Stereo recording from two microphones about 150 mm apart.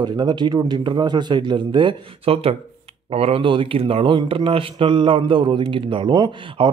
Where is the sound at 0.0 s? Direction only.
30° right (ahead or behind).